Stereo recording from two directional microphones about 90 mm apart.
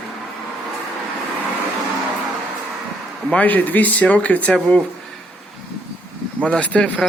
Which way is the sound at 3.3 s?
15° left (ahead or behind).